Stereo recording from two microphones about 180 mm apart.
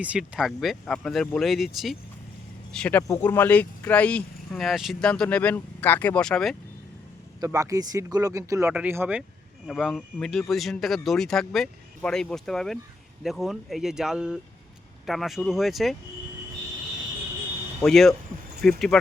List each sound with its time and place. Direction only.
0.0 s speech: 5° right (ahead or behind)
7.4 s speech: 20° right (ahead or behind)
9.6 s speech: centre (ahead or behind)
17.8 s speech: centre (ahead or behind)